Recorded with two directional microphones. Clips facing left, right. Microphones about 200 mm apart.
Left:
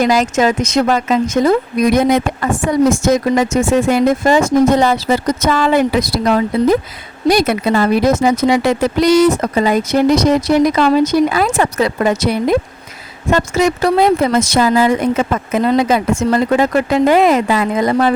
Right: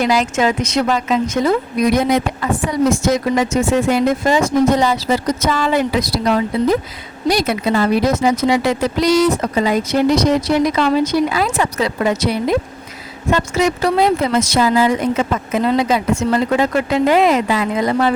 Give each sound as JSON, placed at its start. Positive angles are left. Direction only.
{"t": 0.0, "sound": "speech", "side_deg": 45}